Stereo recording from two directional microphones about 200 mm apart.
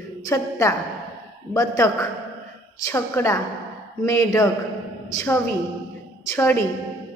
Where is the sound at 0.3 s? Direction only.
15° left (ahead or behind).